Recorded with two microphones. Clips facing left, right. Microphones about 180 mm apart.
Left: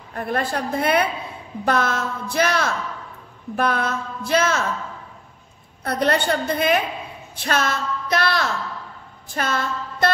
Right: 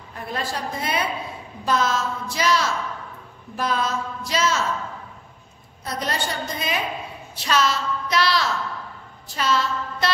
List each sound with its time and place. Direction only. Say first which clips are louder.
0.1 s a woman's voice: left 5 dB; 55° left (ahead or behind)
5.9 s a woman's voice: left 7 dB; 60° left (ahead or behind)
9.3 s a sound: right 1 dB; 50° left (ahead or behind)